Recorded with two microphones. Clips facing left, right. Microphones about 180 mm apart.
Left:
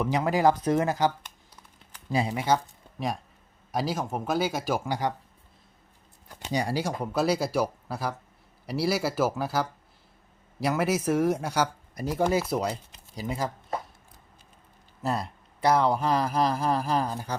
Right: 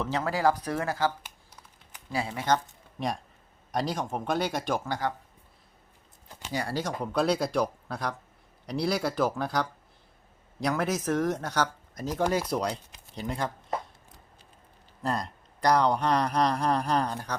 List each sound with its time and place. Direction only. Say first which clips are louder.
0.0 s speech: left 3 dB; 15° left (ahead or behind)
2.1 s speech: left 2 dB; 15° left (ahead or behind)
3.7 s speech: left 1 dB; 5° left (ahead or behind)
6.5 s speech: left 3 dB; 15° left (ahead or behind)
15.0 s speech: left 1 dB; 5° left (ahead or behind)